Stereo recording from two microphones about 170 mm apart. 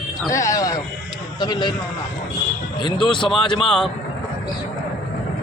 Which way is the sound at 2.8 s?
30° left (ahead or behind).